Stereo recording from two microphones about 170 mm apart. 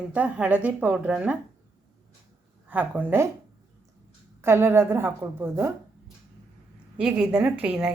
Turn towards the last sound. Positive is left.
turn(degrees=-5)  # may be behind; listen again after turning